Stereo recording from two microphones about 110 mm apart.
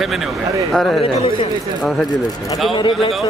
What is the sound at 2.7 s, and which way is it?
Speech, 50° left (ahead or behind).